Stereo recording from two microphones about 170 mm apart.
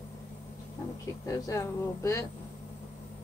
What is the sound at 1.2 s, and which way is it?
Speech, 20° left (ahead or behind).